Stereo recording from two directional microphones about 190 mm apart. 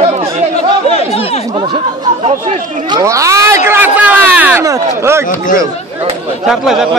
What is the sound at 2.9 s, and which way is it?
Speech, 15° right (ahead or behind).